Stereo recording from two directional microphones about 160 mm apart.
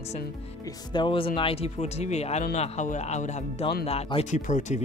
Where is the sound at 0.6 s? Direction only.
30° left (ahead or behind).